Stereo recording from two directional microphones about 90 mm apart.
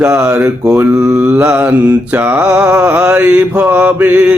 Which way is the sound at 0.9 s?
35° right (ahead or behind).